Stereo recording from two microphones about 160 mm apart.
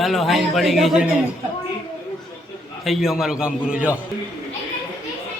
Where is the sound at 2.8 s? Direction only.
Centre (ahead or behind).